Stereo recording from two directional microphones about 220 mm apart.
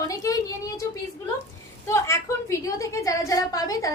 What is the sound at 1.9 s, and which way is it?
A woman's voice, 15° left (ahead or behind).